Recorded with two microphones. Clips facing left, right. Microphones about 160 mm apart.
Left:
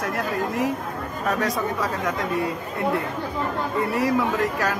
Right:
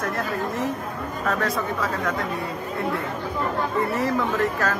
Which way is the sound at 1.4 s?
15° left (ahead or behind).